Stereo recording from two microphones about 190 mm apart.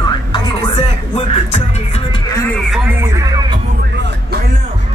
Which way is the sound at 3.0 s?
15° right (ahead or behind).